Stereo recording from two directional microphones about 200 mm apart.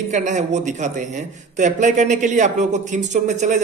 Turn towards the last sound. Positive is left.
turn(degrees=-35)  # may be behind; listen again after turning